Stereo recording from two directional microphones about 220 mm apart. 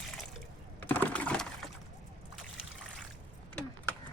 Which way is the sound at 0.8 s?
5° left (ahead or behind).